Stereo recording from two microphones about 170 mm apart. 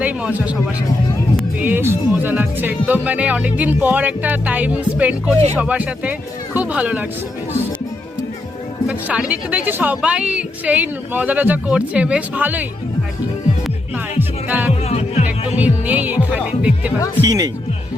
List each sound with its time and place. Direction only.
0.0 s speech: 10° right (ahead or behind)
1.5 s speech: 10° right (ahead or behind)
8.9 s speech: 5° right (ahead or behind)
14.2 s music: 10° right (ahead or behind)
14.8 s music: 40° left (ahead or behind)
15.5 s music: 10° right (ahead or behind)
17.2 s speech: 20° right (ahead or behind)